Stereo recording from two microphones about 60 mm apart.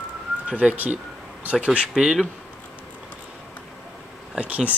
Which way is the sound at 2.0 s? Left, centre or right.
Centre.